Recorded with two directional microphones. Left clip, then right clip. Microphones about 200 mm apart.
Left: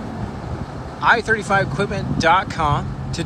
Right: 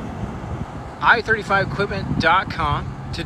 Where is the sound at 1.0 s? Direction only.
15° left (ahead or behind).